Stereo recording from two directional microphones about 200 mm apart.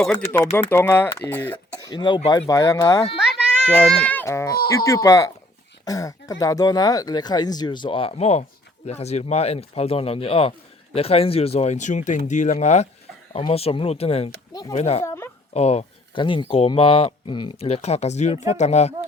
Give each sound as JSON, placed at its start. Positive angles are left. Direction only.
{"t": 0.0, "sound": "speech", "side_deg": 5}
{"t": 1.5, "sound": "speech", "side_deg": 20}
{"t": 3.7, "sound": "speech", "side_deg": 5}
{"t": 15.0, "sound": "speech", "side_deg": 15}
{"t": 15.5, "sound": "speech", "side_deg": 30}